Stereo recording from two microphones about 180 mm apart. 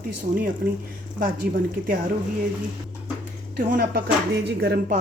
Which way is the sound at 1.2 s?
50° right (ahead or behind).